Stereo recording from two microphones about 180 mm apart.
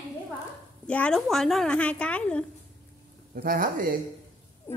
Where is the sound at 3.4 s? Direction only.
50° right (ahead or behind).